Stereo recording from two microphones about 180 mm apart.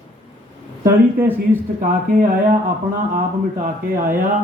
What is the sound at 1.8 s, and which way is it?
Speech, 50° right (ahead or behind).